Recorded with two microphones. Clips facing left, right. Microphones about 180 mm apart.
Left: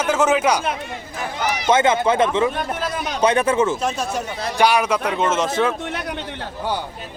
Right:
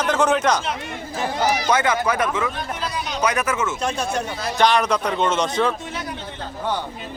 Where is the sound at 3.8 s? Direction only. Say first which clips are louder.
Even; centre (ahead or behind).